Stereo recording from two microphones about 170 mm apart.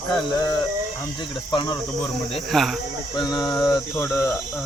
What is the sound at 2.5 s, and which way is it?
Speech, centre (ahead or behind).